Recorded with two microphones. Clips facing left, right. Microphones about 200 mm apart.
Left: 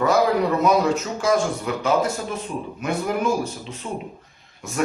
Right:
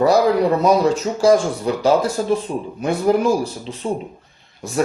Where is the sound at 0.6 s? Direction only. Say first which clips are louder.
Right 3 dB; 35° right (ahead or behind).